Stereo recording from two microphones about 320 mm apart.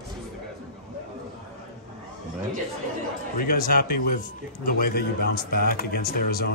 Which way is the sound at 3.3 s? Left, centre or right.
Left.